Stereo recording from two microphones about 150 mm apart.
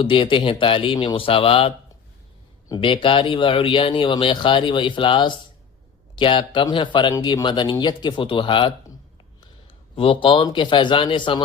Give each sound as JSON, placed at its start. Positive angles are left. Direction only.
{"t": 0.0, "sound": "speech", "side_deg": 35}
{"t": 9.9, "sound": "speech", "side_deg": 35}